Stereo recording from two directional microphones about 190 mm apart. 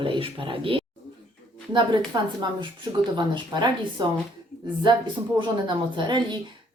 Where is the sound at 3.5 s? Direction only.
25° right (ahead or behind).